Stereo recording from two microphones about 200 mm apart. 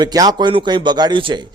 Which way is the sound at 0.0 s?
20° right (ahead or behind).